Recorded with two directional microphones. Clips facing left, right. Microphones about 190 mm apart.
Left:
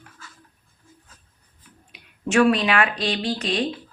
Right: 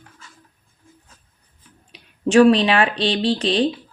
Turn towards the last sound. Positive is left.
turn(degrees=-30)  # may be behind; listen again after turning